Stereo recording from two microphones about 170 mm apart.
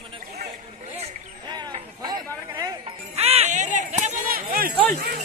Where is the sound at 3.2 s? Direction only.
40° right (ahead or behind); by 4.7 s 60° right (ahead or behind).